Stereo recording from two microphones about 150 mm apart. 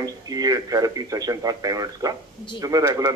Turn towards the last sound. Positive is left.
turn(degrees=-25)  # may be behind; listen again after turning